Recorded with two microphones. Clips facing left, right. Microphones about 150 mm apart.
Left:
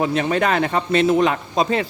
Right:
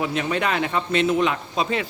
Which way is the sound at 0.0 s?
40° left (ahead or behind).